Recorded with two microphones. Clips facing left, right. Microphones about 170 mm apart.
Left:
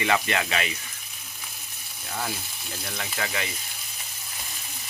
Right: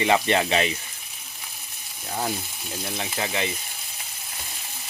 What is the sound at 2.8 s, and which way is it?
Sizzle, 25° right (ahead or behind).